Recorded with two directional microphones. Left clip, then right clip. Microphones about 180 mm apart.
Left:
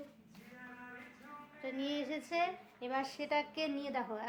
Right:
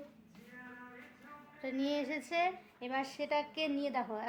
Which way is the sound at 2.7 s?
15° right (ahead or behind).